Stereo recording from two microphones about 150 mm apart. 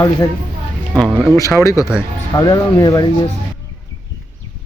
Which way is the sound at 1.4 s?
20° left (ahead or behind).